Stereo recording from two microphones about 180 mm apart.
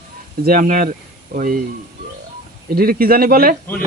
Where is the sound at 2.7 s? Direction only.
55° right (ahead or behind).